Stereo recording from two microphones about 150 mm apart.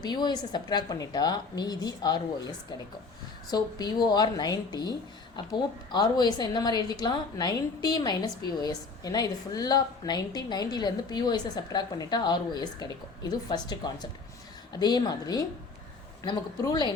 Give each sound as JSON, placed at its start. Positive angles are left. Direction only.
{"t": 0.0, "sound": "a woman's voice", "side_deg": 30}